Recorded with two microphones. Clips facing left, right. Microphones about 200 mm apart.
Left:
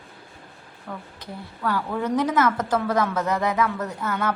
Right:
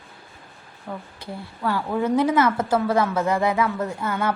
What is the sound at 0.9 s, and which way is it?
A woman's voice, 20° right (ahead or behind).